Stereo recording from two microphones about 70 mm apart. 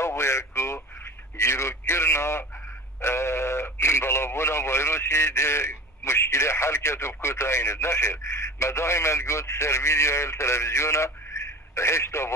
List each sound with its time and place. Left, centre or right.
0.0 s radio: left
1.4 s a sound: left
3.0 s speech: left